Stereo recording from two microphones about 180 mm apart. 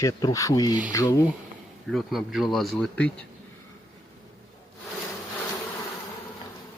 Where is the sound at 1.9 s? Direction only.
Centre (ahead or behind).